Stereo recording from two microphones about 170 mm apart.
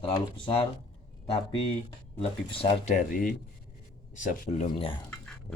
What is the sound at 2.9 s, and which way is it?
Speech, 50° left (ahead or behind).